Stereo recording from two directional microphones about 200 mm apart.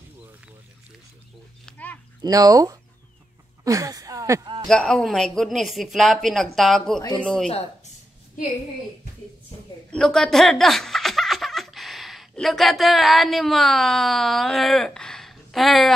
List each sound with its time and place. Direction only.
1.7 s a sound: 10° left (ahead or behind)
2.2 s speech: 20° right (ahead or behind)
4.6 s speech: 5° left (ahead or behind)
9.8 s speech: 5° left (ahead or behind)